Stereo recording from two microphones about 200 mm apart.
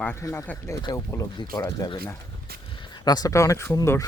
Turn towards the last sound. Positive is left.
turn(degrees=15)  # may be behind; listen again after turning